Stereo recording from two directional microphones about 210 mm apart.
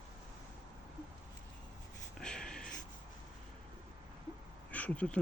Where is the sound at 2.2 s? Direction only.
5° left (ahead or behind).